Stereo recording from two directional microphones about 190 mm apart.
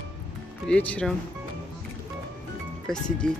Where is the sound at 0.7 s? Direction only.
5° left (ahead or behind).